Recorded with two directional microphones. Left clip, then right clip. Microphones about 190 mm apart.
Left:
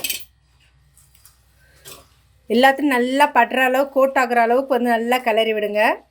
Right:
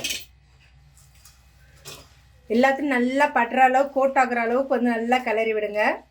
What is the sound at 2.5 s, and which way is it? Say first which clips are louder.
Speech: left 5 dB; 45° left (ahead or behind).